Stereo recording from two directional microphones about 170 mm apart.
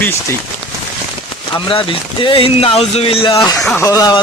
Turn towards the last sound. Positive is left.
turn(degrees=20)  # may be behind; listen again after turning